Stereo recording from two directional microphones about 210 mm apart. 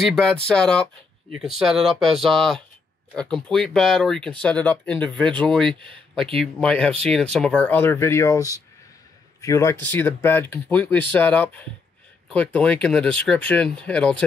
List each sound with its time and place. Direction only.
0.0 s speech: 5° left (ahead or behind)
5.6 s speech: 25° right (ahead or behind)
6.3 s speech: 5° left (ahead or behind)